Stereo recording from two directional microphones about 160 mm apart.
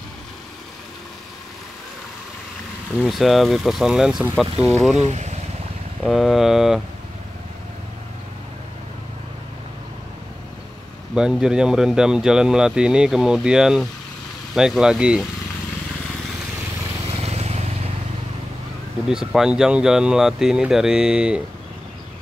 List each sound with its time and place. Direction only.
3.0 s speech: centre (ahead or behind)
4.9 s speech: 45° right (ahead or behind)
6.0 s speech: centre (ahead or behind)
11.1 s speech: 5° right (ahead or behind)
17.1 s boat: 40° right (ahead or behind)
19.0 s speech: 5° right (ahead or behind)